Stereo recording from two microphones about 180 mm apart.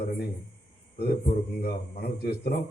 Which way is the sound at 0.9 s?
60° left (ahead or behind).